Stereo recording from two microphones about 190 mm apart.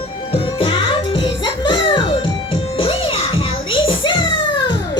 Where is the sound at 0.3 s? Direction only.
30° left (ahead or behind).